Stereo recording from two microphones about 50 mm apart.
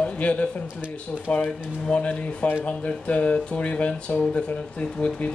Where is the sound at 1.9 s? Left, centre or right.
Left.